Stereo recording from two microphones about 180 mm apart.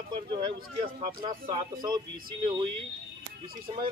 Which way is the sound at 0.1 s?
25° right (ahead or behind).